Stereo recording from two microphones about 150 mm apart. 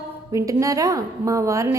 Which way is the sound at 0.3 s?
20° right (ahead or behind).